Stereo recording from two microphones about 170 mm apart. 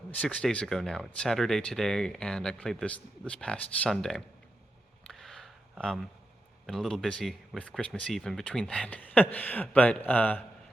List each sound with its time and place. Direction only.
0.1 s speech: 5° left (ahead or behind)
5.0 s a sound: centre (ahead or behind)
6.7 s speech: centre (ahead or behind)